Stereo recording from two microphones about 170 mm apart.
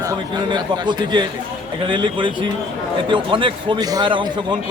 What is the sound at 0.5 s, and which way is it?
A man's voice, 25° right (ahead or behind).